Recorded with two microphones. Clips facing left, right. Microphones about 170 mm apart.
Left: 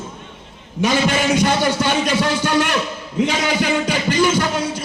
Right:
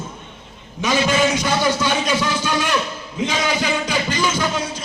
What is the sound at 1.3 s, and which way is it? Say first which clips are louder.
A man's voice: left 3 dB; 55° left (ahead or behind).